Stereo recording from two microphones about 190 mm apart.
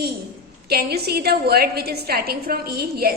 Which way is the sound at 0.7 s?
55° right (ahead or behind).